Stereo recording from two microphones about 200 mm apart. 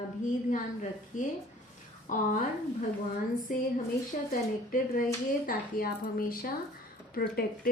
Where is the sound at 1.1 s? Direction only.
40° left (ahead or behind).